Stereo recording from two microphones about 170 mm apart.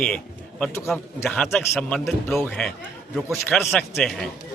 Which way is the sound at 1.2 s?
5° left (ahead or behind).